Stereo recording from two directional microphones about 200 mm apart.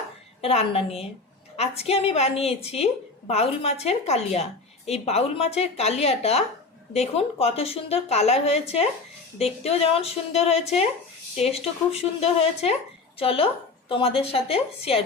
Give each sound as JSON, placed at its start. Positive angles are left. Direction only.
{"t": 0.4, "sound": "a woman's voice", "side_deg": 30}